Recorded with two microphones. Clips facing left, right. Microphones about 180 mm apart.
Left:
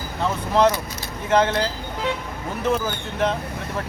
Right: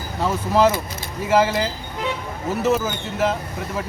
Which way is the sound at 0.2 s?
5° right (ahead or behind).